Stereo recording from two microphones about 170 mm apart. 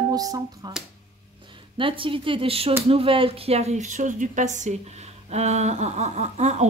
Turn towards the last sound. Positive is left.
turn(degrees=-40)  # may be behind; listen again after turning